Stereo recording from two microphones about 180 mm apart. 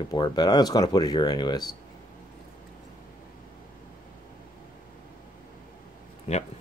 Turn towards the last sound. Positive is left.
turn(degrees=35)  # may be behind; listen again after turning